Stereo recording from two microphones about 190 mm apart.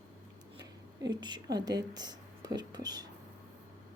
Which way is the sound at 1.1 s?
25° right (ahead or behind).